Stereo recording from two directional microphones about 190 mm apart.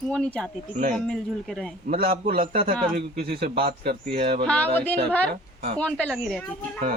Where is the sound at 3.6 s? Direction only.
55° right (ahead or behind).